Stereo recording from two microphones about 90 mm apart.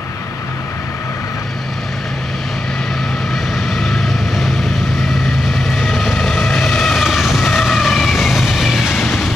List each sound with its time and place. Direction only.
3.7 s vehicle: centre (ahead or behind)
5.5 s vehicle: centre (ahead or behind)